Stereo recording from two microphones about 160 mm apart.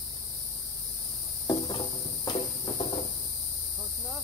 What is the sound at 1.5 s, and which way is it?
Cricket, 30° left (ahead or behind).